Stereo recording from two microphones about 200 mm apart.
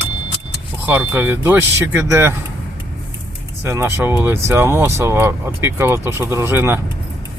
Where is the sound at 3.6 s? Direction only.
10° right (ahead or behind).